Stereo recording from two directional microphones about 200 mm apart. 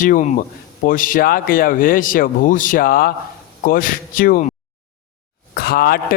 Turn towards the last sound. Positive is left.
turn(degrees=50)  # may be behind; listen again after turning